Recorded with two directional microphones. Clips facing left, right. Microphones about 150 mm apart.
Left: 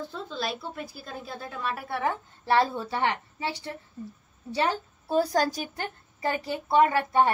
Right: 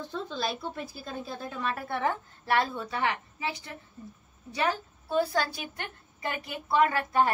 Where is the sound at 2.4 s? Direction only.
30° left (ahead or behind).